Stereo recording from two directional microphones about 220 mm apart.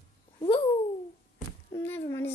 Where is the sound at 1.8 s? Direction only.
10° left (ahead or behind).